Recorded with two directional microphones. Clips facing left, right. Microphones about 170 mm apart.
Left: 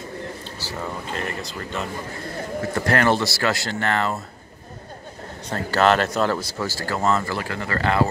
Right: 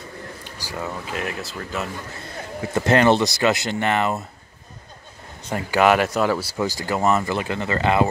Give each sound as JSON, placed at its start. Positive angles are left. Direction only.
{"t": 0.6, "sound": "speech", "side_deg": -10}
{"t": 2.7, "sound": "speech", "side_deg": -20}
{"t": 5.5, "sound": "speech", "side_deg": -10}